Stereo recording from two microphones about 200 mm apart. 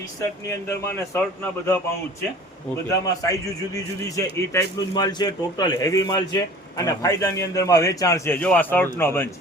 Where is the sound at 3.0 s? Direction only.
15° left (ahead or behind).